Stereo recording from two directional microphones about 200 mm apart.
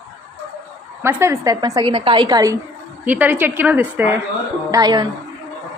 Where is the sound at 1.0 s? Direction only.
10° right (ahead or behind).